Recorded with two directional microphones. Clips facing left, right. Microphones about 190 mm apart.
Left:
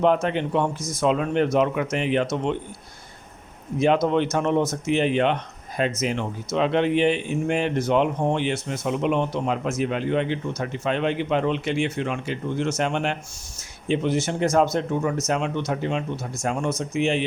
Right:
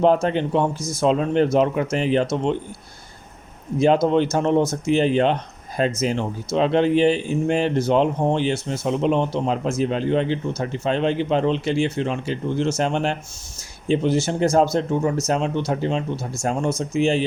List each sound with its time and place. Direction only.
0.0 s speech: 35° right (ahead or behind)
3.8 s speech: 30° right (ahead or behind)